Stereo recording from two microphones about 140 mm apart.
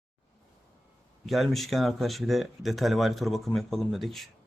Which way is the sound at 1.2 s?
Centre (ahead or behind).